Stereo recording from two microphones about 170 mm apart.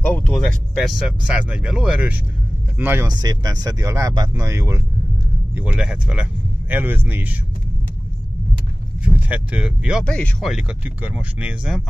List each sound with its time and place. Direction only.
0.0 s speech: 10° left (ahead or behind); by 7.3 s 10° right (ahead or behind)
9.0 s speech: 10° right (ahead or behind)
10.0 s speech: 5° left (ahead or behind)